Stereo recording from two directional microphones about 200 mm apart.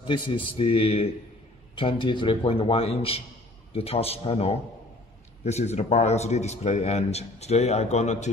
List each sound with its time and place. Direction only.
0.0 s speech: 25° left (ahead or behind)